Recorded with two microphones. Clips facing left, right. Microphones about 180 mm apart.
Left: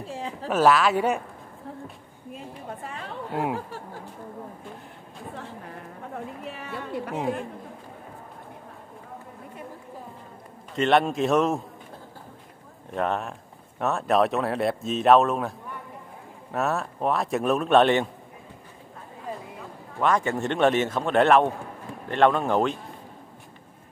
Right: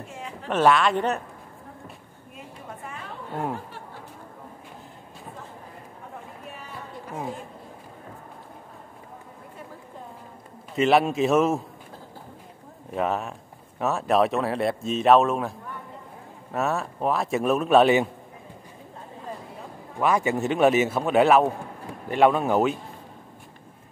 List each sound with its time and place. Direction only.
0.0 s a sound: 35° left (ahead or behind)
0.5 s speech: 5° left (ahead or behind)
6.6 s a sound: 75° left (ahead or behind)
10.8 s speech: 5° right (ahead or behind)
12.9 s speech: 5° right (ahead or behind)
16.5 s speech: centre (ahead or behind)
20.0 s a man's voice: 10° right (ahead or behind)